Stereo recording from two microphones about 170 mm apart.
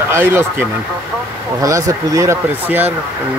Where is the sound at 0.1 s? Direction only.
15° right (ahead or behind).